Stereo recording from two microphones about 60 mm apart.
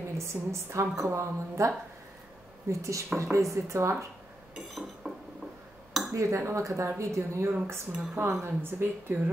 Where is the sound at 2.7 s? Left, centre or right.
Right.